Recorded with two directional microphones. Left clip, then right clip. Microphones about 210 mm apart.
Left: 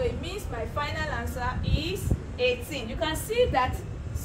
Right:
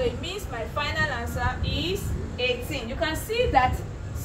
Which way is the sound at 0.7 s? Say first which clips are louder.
Right 5 dB; 5° left (ahead or behind).